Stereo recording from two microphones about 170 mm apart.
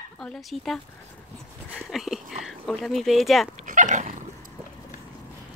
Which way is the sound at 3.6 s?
50° right (ahead or behind).